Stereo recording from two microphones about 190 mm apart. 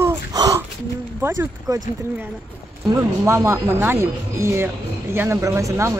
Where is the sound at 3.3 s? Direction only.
15° right (ahead or behind).